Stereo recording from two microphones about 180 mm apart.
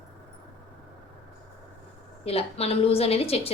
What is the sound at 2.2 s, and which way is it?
A woman's voice, 35° left (ahead or behind).